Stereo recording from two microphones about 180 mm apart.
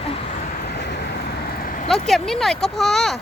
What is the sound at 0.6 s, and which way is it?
Vehicle, 65° left (ahead or behind).